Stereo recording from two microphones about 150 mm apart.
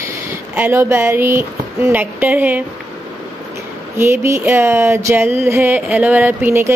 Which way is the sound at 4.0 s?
15° right (ahead or behind).